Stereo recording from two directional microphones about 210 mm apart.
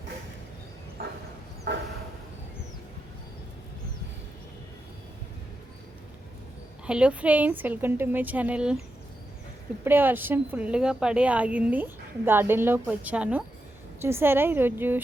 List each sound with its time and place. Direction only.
1.0 s a sound: 45° right (ahead or behind)
6.8 s a woman's voice: 5° right (ahead or behind)
9.8 s a woman's voice: 10° right (ahead or behind)